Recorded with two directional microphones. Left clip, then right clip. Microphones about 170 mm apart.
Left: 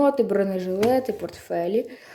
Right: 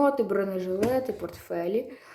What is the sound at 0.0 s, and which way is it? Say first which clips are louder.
Speech: left 4 dB; 20° left (ahead or behind).